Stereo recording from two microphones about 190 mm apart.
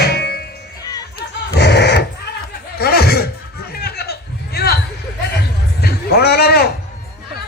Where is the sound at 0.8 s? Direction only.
20° left (ahead or behind).